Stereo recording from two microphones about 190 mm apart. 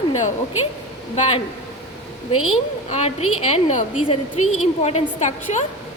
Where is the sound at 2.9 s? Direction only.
35° left (ahead or behind).